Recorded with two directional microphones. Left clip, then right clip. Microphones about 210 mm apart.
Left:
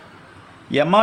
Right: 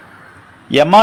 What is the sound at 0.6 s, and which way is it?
Speech, 15° right (ahead or behind).